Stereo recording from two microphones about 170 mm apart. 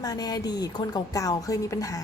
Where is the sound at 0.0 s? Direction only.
20° left (ahead or behind).